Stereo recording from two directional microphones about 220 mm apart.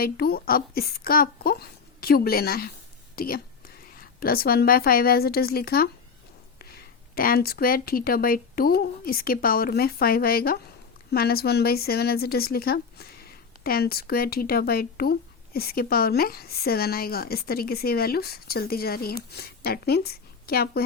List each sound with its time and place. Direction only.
0.0 s a woman's voice: 45° left (ahead or behind)
7.2 s speech: 40° left (ahead or behind)